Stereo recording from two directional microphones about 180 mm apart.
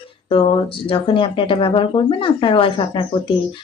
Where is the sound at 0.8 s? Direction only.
30° left (ahead or behind).